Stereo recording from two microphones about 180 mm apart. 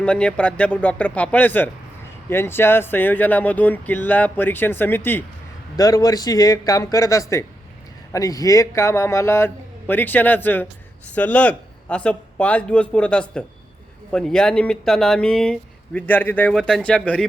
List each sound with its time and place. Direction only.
0.0 s a man's voice: 5° left (ahead or behind)